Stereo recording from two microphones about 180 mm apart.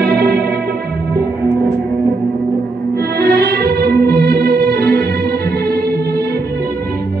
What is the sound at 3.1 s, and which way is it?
Music, 65° right (ahead or behind).